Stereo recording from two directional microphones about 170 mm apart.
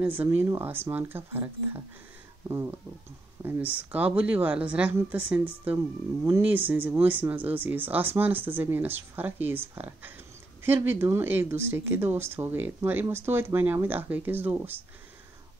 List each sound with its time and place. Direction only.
0.0 s speech: 10° right (ahead or behind)